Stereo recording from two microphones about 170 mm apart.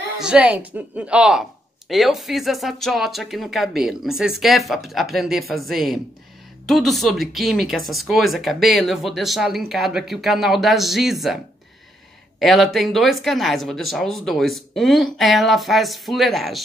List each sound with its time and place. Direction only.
0.2 s a woman's voice: 5° right (ahead or behind)
12.4 s speech: centre (ahead or behind)